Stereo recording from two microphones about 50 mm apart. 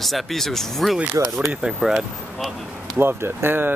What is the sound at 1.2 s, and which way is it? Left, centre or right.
Speech, right.